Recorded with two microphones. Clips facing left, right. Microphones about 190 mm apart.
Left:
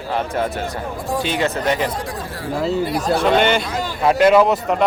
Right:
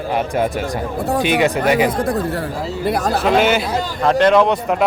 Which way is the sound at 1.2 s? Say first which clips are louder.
Right 5 dB; 15° right (ahead or behind).